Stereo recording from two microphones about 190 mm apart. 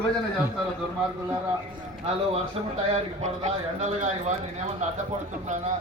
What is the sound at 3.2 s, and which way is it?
Speech, 35° right (ahead or behind).